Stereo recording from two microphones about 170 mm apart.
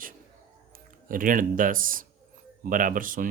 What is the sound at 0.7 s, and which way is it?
Speech, 55° right (ahead or behind).